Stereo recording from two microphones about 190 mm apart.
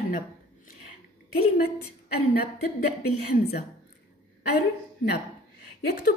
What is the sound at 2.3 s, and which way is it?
A woman's voice, 55° left (ahead or behind).